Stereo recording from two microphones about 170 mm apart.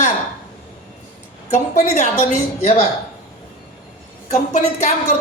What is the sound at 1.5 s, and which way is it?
Speech, 45° left (ahead or behind).